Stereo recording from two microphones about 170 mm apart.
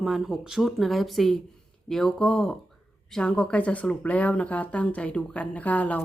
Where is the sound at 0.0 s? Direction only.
Centre (ahead or behind).